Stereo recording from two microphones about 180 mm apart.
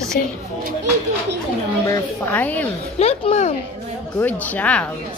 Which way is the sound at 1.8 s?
10° left (ahead or behind).